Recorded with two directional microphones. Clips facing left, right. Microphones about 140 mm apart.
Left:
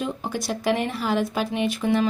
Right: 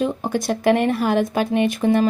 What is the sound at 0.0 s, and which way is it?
Speech, 50° right (ahead or behind).